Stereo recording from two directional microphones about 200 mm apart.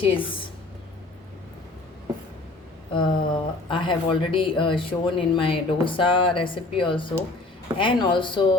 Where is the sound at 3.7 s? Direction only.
25° left (ahead or behind).